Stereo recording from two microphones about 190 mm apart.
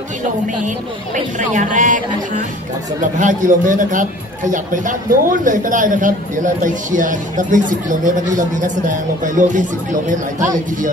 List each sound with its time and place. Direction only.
0.7 s speech: 40° right (ahead or behind)
3.2 s a man's voice: 45° right (ahead or behind)